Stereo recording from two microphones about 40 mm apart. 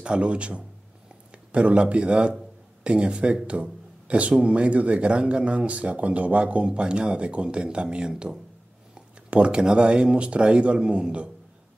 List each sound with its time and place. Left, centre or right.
0.0 s speech: right